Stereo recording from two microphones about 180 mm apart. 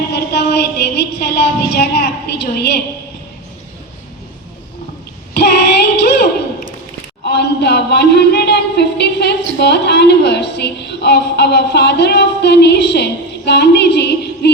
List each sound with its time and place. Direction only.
0.1 s a woman's voice: 70° left (ahead or behind)
5.3 s child singing: 65° left (ahead or behind)
7.3 s a woman's voice: 70° left (ahead or behind)